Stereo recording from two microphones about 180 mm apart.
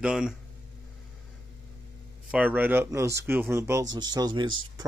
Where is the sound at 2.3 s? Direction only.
10° right (ahead or behind).